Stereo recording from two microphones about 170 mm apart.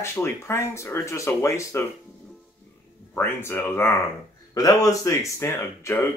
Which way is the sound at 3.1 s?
15° left (ahead or behind).